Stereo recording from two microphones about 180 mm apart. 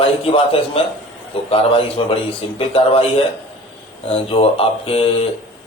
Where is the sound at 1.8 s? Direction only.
30° left (ahead or behind).